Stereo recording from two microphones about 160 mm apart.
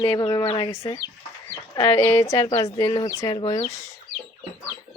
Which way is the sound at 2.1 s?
15° left (ahead or behind).